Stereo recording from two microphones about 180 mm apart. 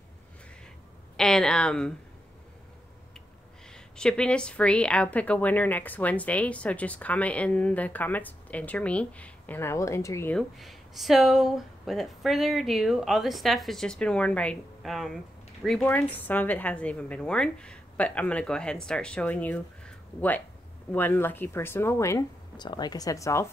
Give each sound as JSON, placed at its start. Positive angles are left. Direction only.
{"t": 1.1, "sound": "speech", "side_deg": 5}
{"t": 3.7, "sound": "a woman's voice", "side_deg": 5}
{"t": 10.3, "sound": "a woman's voice", "side_deg": 0}